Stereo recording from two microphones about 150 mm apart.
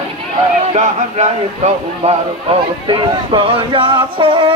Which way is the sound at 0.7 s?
50° right (ahead or behind).